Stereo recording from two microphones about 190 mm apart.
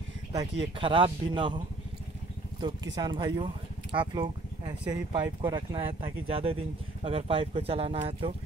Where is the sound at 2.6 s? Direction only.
20° right (ahead or behind).